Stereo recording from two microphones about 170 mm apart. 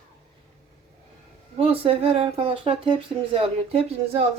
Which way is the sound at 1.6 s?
35° right (ahead or behind).